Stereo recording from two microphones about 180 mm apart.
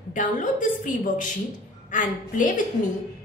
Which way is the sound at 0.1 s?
45° left (ahead or behind).